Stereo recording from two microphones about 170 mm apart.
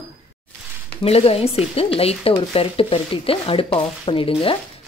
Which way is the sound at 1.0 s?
35° left (ahead or behind).